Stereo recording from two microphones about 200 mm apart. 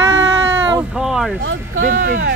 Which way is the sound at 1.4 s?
85° right.